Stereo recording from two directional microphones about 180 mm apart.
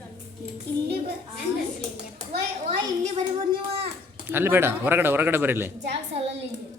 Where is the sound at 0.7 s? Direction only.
65° right (ahead or behind).